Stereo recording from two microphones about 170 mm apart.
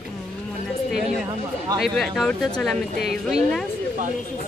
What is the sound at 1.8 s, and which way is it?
Speech, centre (ahead or behind).